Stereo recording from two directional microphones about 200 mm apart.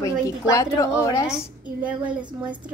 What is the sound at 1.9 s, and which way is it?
Speech, 5° right (ahead or behind).